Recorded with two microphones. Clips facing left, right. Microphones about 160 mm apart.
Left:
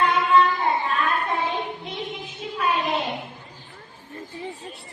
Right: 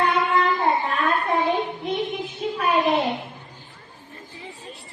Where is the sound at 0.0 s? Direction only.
55° right (ahead or behind).